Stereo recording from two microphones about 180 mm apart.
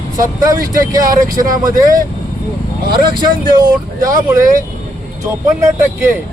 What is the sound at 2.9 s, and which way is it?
Speech, 25° right (ahead or behind).